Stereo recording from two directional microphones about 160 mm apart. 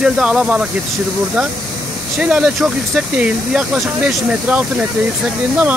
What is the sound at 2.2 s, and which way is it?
Speech, 5° right (ahead or behind).